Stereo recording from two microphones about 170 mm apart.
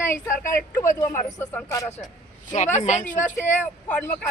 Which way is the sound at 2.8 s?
45° left (ahead or behind).